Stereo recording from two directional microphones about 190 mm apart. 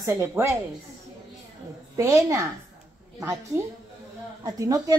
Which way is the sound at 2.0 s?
15° right (ahead or behind).